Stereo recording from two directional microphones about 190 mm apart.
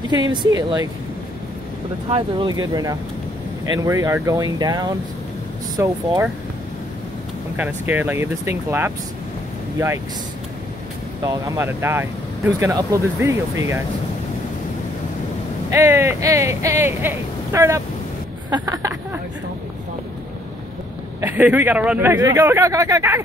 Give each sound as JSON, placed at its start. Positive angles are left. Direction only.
{"t": 0.1, "sound": "speech", "side_deg": -20}
{"t": 2.0, "sound": "speech", "side_deg": -30}
{"t": 7.5, "sound": "speech", "side_deg": -10}
{"t": 11.2, "sound": "speech", "side_deg": -15}
{"t": 15.7, "sound": "speech", "side_deg": -15}
{"t": 21.2, "sound": "speech", "side_deg": -10}